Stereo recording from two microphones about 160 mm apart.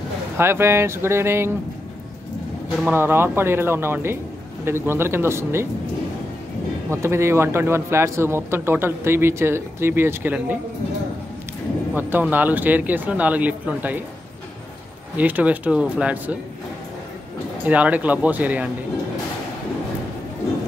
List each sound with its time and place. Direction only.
0.4 s a man's voice: 15° right (ahead or behind)
2.8 s a man's voice: 15° right (ahead or behind)
6.9 s a man's voice: 15° right (ahead or behind)
11.9 s a man's voice: 10° right (ahead or behind)
15.1 s a man's voice: 10° right (ahead or behind)
17.6 s a man's voice: 10° right (ahead or behind)